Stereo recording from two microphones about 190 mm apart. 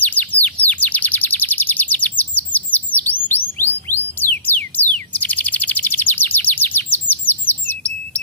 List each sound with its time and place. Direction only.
0.0 s chirp: 10° left (ahead or behind)
3.8 s bird: 10° left (ahead or behind)